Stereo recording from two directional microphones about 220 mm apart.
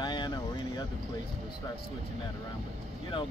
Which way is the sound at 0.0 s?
20° left (ahead or behind).